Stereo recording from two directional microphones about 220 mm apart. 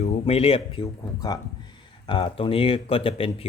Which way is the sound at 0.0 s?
30° left (ahead or behind).